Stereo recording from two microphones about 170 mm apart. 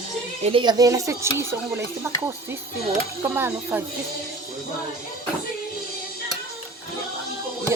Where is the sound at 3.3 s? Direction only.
10° right (ahead or behind).